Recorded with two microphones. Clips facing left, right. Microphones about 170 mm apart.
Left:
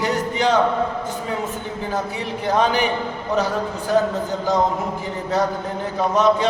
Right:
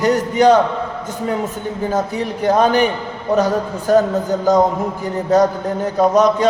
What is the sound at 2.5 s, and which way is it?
A man's voice, 45° right (ahead or behind).